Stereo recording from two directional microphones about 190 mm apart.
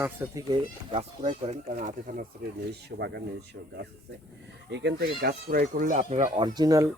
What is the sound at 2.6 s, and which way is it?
Speech, 60° right (ahead or behind).